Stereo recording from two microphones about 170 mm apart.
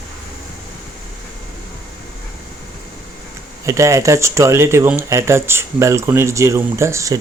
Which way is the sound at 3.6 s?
20° right (ahead or behind).